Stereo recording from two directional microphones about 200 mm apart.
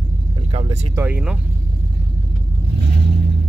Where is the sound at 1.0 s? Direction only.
5° right (ahead or behind).